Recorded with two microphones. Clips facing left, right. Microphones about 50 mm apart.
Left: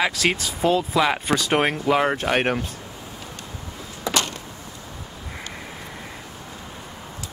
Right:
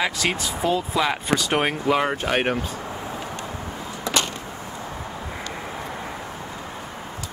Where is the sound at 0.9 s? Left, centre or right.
Centre.